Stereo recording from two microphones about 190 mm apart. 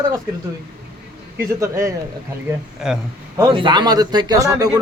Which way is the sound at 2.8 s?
5° right (ahead or behind).